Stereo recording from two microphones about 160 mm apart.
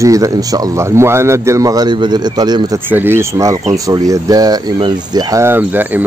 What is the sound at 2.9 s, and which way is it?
Speech, 15° right (ahead or behind).